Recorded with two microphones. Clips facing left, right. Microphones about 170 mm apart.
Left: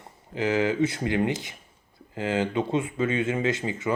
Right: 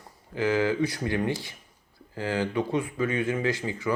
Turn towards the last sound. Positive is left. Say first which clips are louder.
# left 1 dB
turn(degrees=25)  # may be behind; listen again after turning